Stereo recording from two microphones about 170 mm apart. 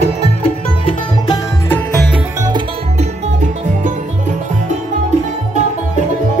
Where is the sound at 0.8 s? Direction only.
25° left (ahead or behind).